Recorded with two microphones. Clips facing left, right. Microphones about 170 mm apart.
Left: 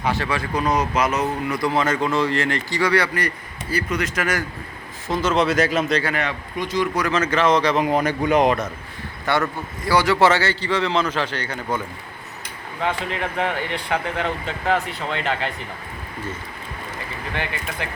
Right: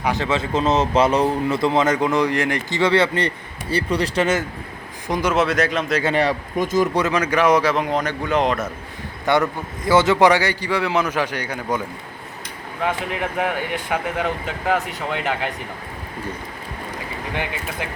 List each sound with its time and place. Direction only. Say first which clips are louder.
0.0 s speech: right 2 dB; 15° right (ahead or behind)
5.0 s a man's voice: even; 15° right (ahead or behind); by 6.0 s centre (ahead or behind)
6.1 s speech: right 6 dB; 40° right (ahead or behind)
7.1 s a man's voice: left 1 dB; 10° right (ahead or behind); by 8.5 s 15° left (ahead or behind)
9.2 s speech: right 3 dB; 20° right (ahead or behind)
12.8 s speech: right 1 dB; 10° right (ahead or behind)
17.3 s speech: right 1 dB; 15° right (ahead or behind)